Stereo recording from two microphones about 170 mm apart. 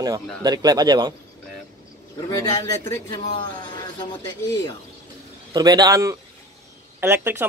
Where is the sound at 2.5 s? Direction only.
20° left (ahead or behind).